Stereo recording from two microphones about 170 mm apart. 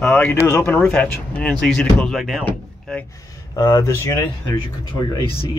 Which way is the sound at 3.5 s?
20° left (ahead or behind).